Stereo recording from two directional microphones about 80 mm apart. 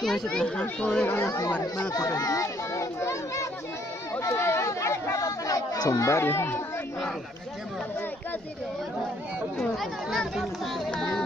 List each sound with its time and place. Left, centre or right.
0.0 s speech: centre
1.0 s a child's voice: left
1.9 s a sound: left
4.2 s chatter: left
6.2 s a child's voice: left
9.6 s speech: centre